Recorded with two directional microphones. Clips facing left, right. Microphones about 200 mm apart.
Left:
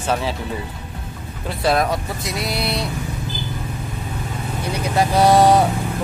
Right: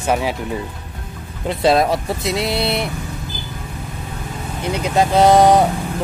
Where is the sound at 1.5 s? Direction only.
25° right (ahead or behind).